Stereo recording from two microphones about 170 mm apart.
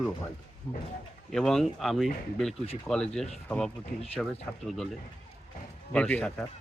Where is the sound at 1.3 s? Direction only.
Centre (ahead or behind).